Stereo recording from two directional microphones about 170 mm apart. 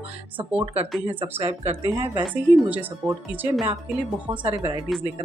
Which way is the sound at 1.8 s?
35° right (ahead or behind).